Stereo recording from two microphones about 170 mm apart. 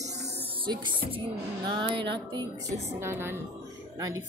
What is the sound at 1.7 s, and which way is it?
Speech, 30° right (ahead or behind).